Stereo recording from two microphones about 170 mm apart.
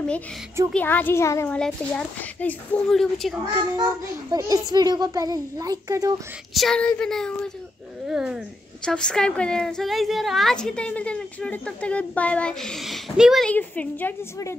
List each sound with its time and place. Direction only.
0.7 s a woman's voice: 10° left (ahead or behind)
3.5 s a child's voice: 15° right (ahead or behind)
6.5 s a woman's voice: centre (ahead or behind)